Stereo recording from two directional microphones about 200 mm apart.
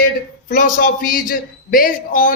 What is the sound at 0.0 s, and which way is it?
A man's voice, 45° left (ahead or behind).